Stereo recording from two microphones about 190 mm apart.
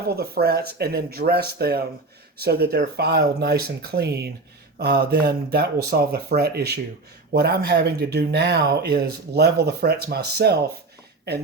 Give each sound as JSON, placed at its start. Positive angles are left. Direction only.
{"t": 0.1, "sound": "speech", "side_deg": -55}